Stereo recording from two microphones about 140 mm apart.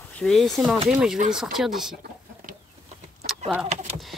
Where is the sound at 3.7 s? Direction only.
50° right (ahead or behind).